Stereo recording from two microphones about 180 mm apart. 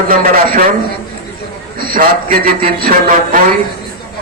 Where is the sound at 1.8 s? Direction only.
50° right (ahead or behind).